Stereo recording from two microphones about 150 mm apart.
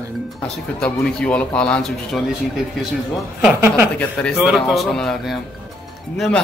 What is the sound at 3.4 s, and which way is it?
Speech, 10° right (ahead or behind).